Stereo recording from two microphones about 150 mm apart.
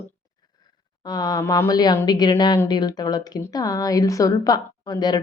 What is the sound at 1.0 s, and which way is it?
Speech, 30° left (ahead or behind).